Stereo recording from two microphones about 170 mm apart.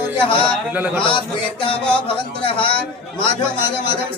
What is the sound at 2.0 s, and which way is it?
Speech, 30° left (ahead or behind).